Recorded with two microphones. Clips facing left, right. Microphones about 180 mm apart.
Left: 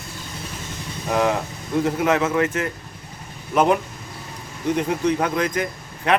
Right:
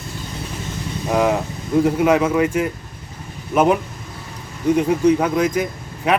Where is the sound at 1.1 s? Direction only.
5° right (ahead or behind).